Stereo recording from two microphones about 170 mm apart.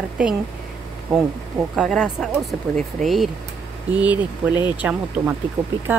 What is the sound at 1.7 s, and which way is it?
Speech, 5° right (ahead or behind).